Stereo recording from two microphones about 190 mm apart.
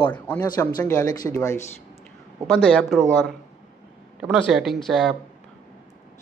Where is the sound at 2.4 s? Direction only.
5° left (ahead or behind).